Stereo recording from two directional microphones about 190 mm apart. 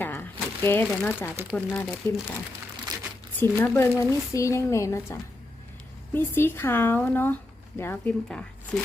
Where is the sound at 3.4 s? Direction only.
10° left (ahead or behind).